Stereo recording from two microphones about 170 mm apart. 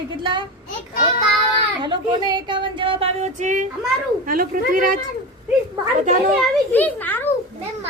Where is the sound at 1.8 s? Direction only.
25° right (ahead or behind); by 3.6 s 45° right (ahead or behind).